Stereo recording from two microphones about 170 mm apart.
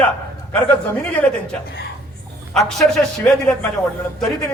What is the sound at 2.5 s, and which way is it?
A man's voice, centre (ahead or behind).